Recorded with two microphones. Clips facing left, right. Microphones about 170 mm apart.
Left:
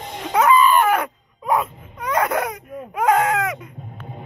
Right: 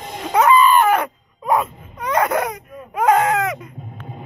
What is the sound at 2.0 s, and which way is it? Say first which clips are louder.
Baby cry: right 2 dB; 5° left (ahead or behind).